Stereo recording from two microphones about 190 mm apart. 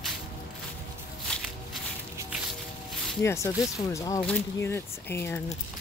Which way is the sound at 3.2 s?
15° left (ahead or behind).